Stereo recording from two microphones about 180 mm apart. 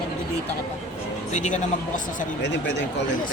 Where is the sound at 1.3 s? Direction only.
40° left (ahead or behind).